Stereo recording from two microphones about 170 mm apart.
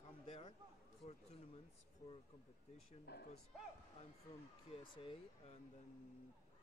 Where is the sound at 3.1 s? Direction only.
75° left (ahead or behind).